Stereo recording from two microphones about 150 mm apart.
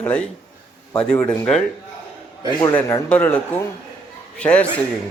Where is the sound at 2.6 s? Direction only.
15° left (ahead or behind).